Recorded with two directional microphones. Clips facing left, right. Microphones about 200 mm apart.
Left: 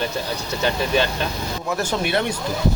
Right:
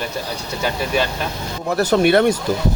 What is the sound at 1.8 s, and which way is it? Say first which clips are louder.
Speech: right 11 dB; 60° right (ahead or behind).